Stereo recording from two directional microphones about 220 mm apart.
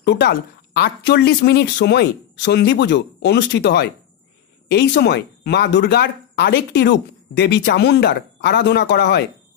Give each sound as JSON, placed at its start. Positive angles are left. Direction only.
{"t": 0.0, "sound": "speech", "side_deg": 50}